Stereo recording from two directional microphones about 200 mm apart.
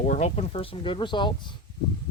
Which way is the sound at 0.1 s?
35° left (ahead or behind).